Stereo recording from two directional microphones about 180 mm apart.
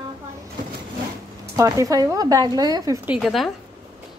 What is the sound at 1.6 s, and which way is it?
Speech, 20° right (ahead or behind).